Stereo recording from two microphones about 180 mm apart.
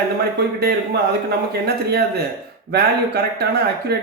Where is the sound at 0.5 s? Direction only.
65° right (ahead or behind).